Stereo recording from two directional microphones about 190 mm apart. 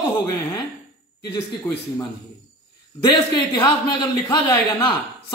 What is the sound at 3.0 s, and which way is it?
Speech, 25° left (ahead or behind).